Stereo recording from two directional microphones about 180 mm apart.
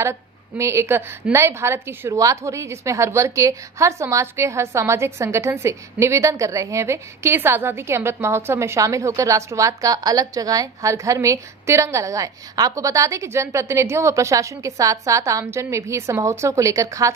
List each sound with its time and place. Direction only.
0.0 s a woman's voice: 15° right (ahead or behind)